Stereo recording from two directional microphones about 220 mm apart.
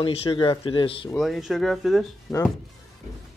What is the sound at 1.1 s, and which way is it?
Speech, centre (ahead or behind).